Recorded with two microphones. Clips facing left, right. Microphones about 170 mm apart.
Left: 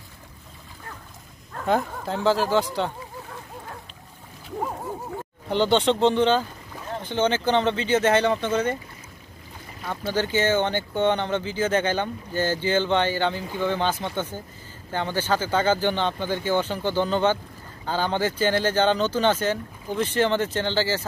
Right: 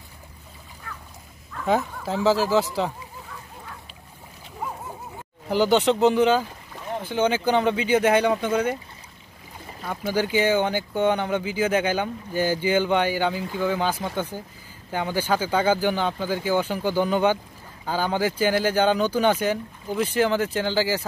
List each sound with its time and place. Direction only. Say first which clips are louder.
0.9 s a sound: right 1 dB; 45° left (ahead or behind)
1.7 s speech: right 1 dB; centre (ahead or behind)
5.5 s speech: right 1 dB; 10° right (ahead or behind)
9.8 s speech: right 1 dB; 10° right (ahead or behind)